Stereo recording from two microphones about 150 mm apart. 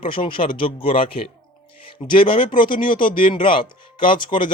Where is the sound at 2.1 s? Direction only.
35° left (ahead or behind).